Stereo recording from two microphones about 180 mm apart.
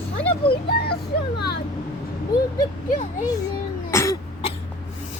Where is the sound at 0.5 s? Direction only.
60° left (ahead or behind).